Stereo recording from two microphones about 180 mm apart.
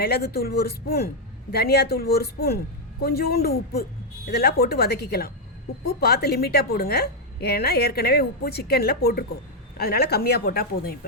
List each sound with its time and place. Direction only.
0.0 s a woman's voice: 60° left (ahead or behind)